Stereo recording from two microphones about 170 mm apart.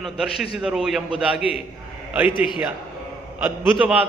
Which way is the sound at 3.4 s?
10° right (ahead or behind).